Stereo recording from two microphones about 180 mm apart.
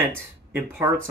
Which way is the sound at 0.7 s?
10° right (ahead or behind).